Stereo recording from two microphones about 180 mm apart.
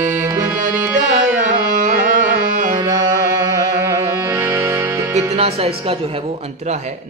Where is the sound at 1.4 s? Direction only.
45° right (ahead or behind).